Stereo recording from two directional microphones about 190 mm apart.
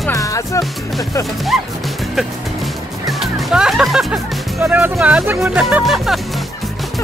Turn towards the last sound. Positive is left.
turn(degrees=0)  # may be behind; listen again after turning